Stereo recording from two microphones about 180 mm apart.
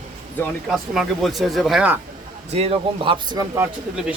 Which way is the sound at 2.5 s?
35° right (ahead or behind).